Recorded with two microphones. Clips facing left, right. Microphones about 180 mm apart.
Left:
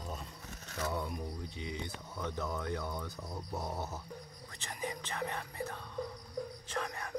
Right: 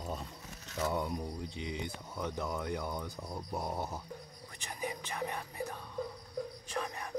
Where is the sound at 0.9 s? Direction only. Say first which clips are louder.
Right 3 dB; 20° right (ahead or behind).